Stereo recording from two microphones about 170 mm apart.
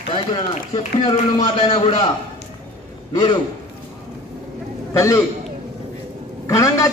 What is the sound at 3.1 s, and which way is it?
Speech, 30° left (ahead or behind).